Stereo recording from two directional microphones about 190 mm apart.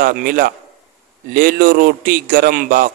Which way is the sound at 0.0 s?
50° right (ahead or behind).